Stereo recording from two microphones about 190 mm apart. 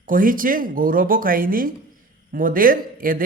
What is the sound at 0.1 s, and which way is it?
Speech, 45° right (ahead or behind).